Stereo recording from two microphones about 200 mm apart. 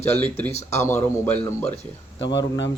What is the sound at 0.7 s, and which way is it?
Speech, 15° left (ahead or behind).